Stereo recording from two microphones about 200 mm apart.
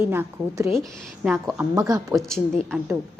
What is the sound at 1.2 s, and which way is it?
Speech, 5° right (ahead or behind).